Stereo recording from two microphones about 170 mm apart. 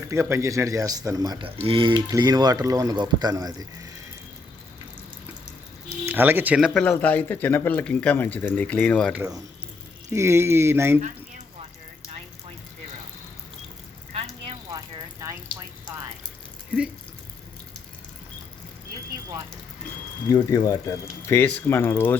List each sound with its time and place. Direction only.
0.1 s speech: 15° right (ahead or behind)
6.1 s speech: 10° right (ahead or behind)
6.7 s speech: centre (ahead or behind)
9.1 s speech: 15° right (ahead or behind)
14.7 s a sound: 20° right (ahead or behind)
20.3 s speech: 20° left (ahead or behind)